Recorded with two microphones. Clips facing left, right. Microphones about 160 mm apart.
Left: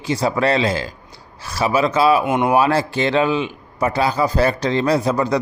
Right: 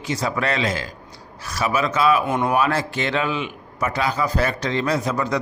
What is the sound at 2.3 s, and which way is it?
Speech, 20° left (ahead or behind).